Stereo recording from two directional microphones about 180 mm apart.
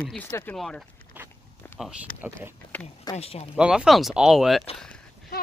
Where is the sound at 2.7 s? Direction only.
10° left (ahead or behind).